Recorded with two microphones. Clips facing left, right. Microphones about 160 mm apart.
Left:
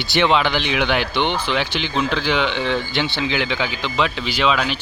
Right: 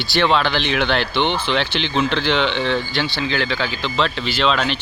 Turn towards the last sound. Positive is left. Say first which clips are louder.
# even
turn(degrees=5)  # may be behind; listen again after turning